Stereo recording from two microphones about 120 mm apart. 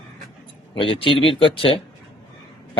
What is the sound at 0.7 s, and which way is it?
A man's voice, 45° left (ahead or behind).